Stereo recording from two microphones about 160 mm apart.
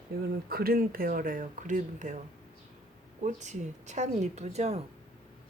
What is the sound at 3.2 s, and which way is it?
A woman's voice, 50° right (ahead or behind).